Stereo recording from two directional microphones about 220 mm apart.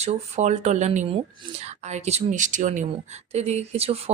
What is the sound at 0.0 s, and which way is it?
Speech, 30° right (ahead or behind).